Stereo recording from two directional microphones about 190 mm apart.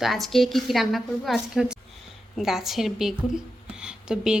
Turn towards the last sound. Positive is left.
turn(degrees=-5)  # may be behind; listen again after turning